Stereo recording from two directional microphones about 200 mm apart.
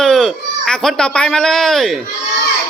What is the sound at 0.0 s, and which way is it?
Speech, centre (ahead or behind).